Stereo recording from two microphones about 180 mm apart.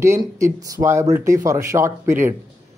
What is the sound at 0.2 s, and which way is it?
Speech, 20° right (ahead or behind).